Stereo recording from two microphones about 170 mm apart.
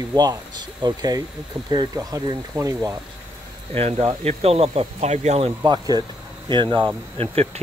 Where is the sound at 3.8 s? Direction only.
35° right (ahead or behind).